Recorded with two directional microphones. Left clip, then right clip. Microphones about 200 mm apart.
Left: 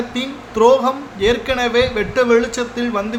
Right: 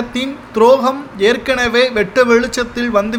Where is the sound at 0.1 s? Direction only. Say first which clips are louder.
Right 3 dB; 25° right (ahead or behind).